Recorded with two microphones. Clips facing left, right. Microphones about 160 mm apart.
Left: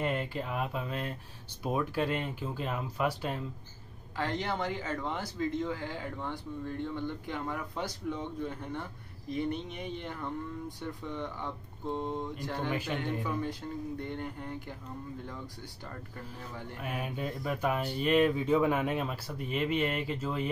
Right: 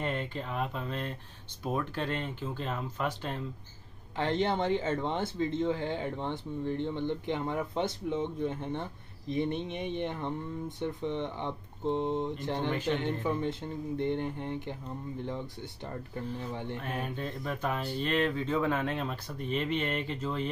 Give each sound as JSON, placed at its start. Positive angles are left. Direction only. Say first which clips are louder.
{"t": 0.0, "sound": "speech", "louder": "left 1 dB", "side_deg": 5}
{"t": 4.2, "sound": "speech", "louder": "right 4 dB", "side_deg": -25}
{"t": 12.6, "sound": "speech", "louder": "right 3 dB", "side_deg": 10}
{"t": 13.0, "sound": "speech", "louder": "right 2 dB", "side_deg": -20}
{"t": 16.8, "sound": "speech", "louder": "even", "side_deg": 10}